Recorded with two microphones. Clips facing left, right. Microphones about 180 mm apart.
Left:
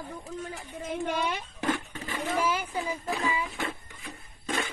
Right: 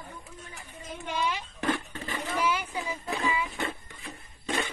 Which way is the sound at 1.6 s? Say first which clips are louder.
Even; 15° left (ahead or behind).